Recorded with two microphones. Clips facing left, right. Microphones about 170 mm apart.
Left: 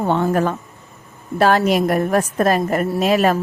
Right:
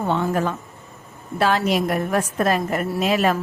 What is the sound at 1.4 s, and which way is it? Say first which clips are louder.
A woman's voice: left 4 dB; 45° left (ahead or behind).